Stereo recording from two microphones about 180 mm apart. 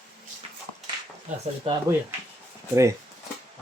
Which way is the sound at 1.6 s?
30° right (ahead or behind).